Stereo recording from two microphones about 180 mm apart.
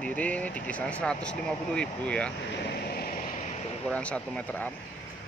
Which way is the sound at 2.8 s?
60° left (ahead or behind).